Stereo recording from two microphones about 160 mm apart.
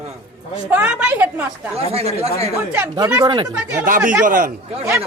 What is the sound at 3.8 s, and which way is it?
Speech, 60° right (ahead or behind).